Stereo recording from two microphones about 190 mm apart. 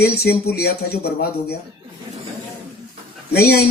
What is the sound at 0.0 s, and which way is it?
Speech, 55° left (ahead or behind).